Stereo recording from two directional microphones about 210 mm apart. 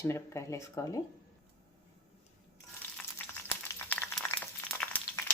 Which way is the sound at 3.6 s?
10° left (ahead or behind).